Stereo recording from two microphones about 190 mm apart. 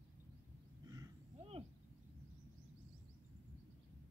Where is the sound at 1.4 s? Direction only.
30° right (ahead or behind).